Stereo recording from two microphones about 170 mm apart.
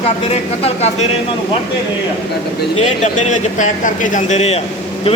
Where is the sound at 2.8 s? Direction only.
45° left (ahead or behind).